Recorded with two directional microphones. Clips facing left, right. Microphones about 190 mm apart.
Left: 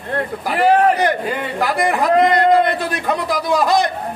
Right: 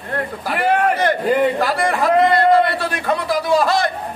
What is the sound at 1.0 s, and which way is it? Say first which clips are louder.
A man's voice: right 3 dB; 15° left (ahead or behind).